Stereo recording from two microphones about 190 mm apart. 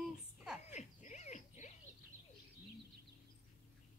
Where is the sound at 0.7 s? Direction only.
40° left (ahead or behind).